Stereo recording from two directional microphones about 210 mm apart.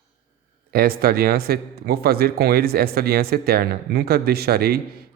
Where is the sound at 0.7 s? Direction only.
45° right (ahead or behind).